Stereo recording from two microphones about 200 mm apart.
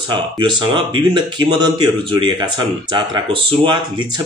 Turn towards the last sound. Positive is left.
turn(degrees=-25)  # may be behind; listen again after turning